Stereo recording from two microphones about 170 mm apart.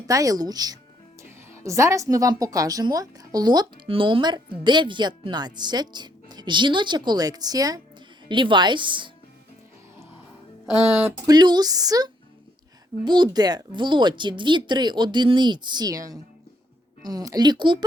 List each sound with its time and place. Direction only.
0.1 s a woman's voice: 20° right (ahead or behind)
11.3 s a woman's voice: 25° right (ahead or behind)